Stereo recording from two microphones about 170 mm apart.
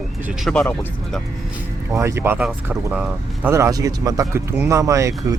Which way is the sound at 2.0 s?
15° right (ahead or behind).